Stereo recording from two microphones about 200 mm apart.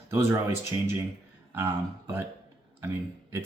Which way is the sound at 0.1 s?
10° right (ahead or behind).